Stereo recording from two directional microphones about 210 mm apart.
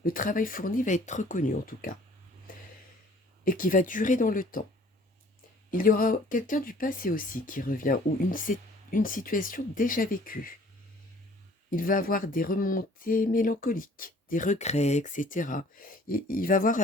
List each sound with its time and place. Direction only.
0.0 s speech: 40° left (ahead or behind)
2.5 s a sound: 40° left (ahead or behind)
3.4 s speech: 40° left (ahead or behind)
5.7 s speech: 40° left (ahead or behind)
11.7 s speech: 40° left (ahead or behind)